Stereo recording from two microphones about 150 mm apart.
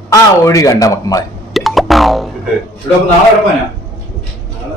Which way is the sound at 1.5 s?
Centre (ahead or behind).